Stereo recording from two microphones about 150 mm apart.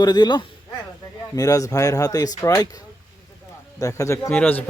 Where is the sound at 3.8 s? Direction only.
20° left (ahead or behind).